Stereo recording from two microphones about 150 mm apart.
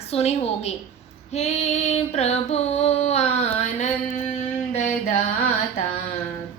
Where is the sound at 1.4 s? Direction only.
45° left (ahead or behind).